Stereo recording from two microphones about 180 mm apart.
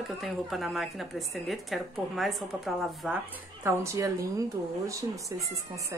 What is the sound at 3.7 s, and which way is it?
Speech, 15° right (ahead or behind).